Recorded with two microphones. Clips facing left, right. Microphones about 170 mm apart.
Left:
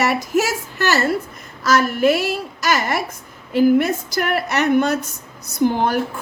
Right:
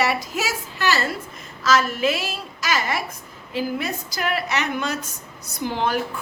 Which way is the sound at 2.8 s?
45° left (ahead or behind).